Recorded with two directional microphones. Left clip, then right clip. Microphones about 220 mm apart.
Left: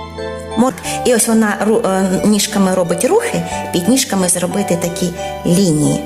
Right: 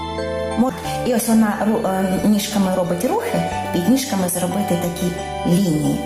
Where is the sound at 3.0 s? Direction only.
40° left (ahead or behind).